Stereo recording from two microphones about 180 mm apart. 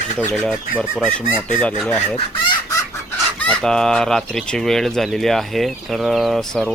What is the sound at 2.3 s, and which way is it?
Speech, 25° left (ahead or behind).